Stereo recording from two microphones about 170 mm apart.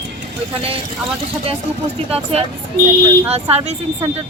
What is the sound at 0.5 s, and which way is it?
Speech, 35° right (ahead or behind).